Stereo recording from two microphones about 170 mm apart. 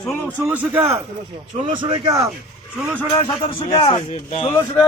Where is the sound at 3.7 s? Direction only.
30° left (ahead or behind).